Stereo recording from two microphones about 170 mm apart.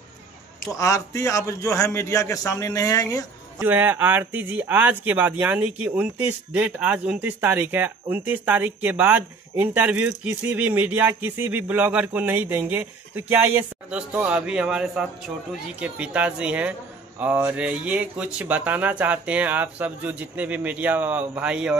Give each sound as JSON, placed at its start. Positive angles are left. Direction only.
{"t": 0.7, "sound": "a man's voice", "side_deg": 20}
{"t": 3.6, "sound": "speech", "side_deg": -10}